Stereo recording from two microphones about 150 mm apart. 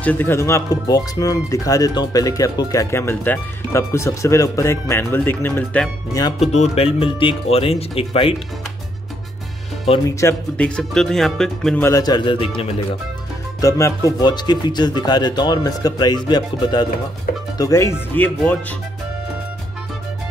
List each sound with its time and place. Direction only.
0.0 s speech: 10° left (ahead or behind)
6.4 s speech: 45° left (ahead or behind)
9.9 s speech: 45° left (ahead or behind)
10.6 s speech: 5° left (ahead or behind)
11.8 s speech: 25° left (ahead or behind)
13.6 s speech: 20° left (ahead or behind)